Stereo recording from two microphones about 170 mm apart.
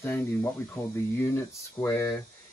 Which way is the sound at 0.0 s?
15° left (ahead or behind).